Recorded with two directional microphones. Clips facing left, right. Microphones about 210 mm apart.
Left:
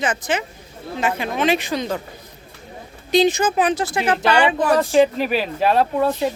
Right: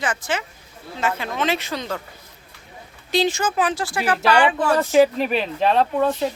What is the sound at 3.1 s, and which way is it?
Speech, 20° left (ahead or behind).